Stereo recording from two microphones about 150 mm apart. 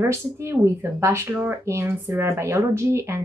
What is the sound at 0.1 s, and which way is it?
Speech, 20° right (ahead or behind).